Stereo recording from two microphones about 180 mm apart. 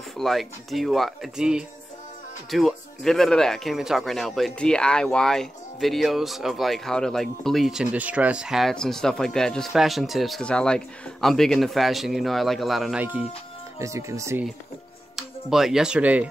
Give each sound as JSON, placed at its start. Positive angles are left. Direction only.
{"t": 0.2, "sound": "speech", "side_deg": 0}
{"t": 15.1, "sound": "speech", "side_deg": 0}